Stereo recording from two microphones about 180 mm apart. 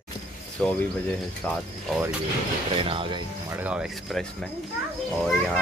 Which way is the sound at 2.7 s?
30° right (ahead or behind).